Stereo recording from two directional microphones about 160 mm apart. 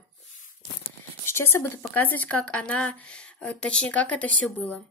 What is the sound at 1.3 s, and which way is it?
Speech, 15° left (ahead or behind).